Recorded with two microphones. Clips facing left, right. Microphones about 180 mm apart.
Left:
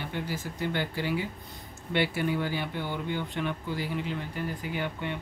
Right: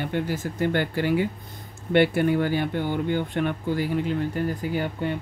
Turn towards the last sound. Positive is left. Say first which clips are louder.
# right 6 dB
turn(degrees=-40)  # may be behind; listen again after turning